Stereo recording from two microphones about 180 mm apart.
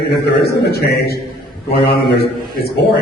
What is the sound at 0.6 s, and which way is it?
Speech, 60° left (ahead or behind).